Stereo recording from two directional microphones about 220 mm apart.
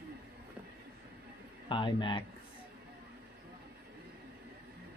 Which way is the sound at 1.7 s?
20° left (ahead or behind).